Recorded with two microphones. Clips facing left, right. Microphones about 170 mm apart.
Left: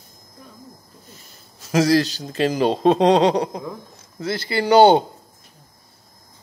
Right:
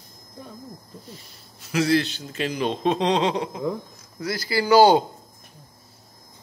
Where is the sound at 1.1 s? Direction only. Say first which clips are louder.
Right 2 dB; 40° left (ahead or behind).